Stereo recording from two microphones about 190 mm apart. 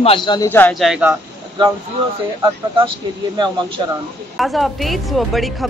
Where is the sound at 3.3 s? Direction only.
25° right (ahead or behind).